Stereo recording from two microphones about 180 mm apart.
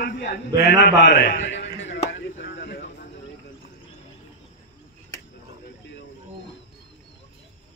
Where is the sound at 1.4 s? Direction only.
75° left (ahead or behind).